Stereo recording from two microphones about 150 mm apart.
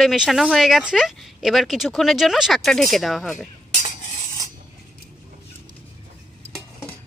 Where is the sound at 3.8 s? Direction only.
55° left (ahead or behind).